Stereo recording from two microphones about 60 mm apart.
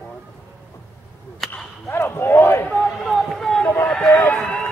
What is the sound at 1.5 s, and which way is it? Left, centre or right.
Whip, left.